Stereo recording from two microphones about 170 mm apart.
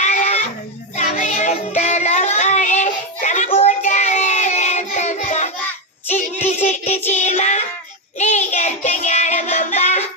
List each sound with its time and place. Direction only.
0.0 s a sound: 40° left (ahead or behind)
0.9 s child singing: 45° left (ahead or behind)
6.7 s child singing: 40° left (ahead or behind)
7.1 s music: 40° left (ahead or behind)
8.2 s child singing: 45° left (ahead or behind)